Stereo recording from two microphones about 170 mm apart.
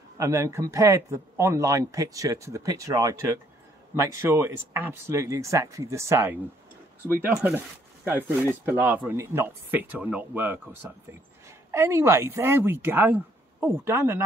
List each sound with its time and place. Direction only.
0.2 s speech: 15° right (ahead or behind)